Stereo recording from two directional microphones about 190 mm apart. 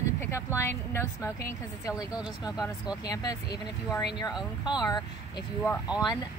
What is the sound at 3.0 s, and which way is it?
Speech, 20° left (ahead or behind).